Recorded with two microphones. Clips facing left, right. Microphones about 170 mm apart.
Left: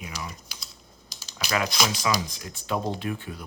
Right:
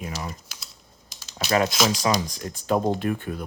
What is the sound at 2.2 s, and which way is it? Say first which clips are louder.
Speech: right 5 dB; 40° right (ahead or behind).